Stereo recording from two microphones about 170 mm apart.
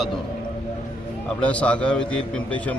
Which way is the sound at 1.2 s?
5° left (ahead or behind).